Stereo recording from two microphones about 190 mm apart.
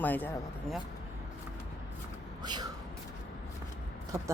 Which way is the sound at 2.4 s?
20° right (ahead or behind).